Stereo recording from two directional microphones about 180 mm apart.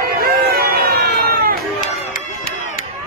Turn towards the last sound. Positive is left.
turn(degrees=-60)  # may be behind; listen again after turning